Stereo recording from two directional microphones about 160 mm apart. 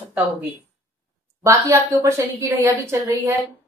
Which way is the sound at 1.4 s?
20° right (ahead or behind).